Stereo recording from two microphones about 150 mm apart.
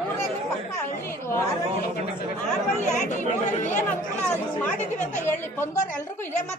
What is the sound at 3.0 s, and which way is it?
Chatter, 55° left (ahead or behind).